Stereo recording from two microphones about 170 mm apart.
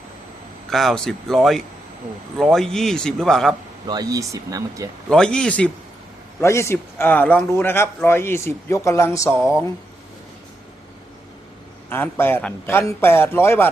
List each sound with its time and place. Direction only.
0.7 s a man's voice: centre (ahead or behind)
3.8 s speech: 20° right (ahead or behind)
5.0 s a man's voice: 5° left (ahead or behind)
9.3 s speech: 5° right (ahead or behind)
11.9 s a man's voice: 10° left (ahead or behind)